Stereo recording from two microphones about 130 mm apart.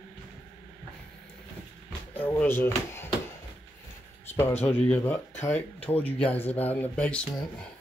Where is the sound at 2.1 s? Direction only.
15° left (ahead or behind).